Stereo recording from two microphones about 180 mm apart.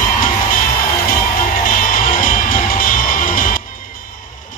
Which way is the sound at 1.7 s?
50° left (ahead or behind).